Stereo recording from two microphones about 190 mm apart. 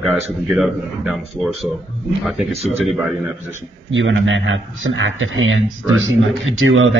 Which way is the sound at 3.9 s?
80° right.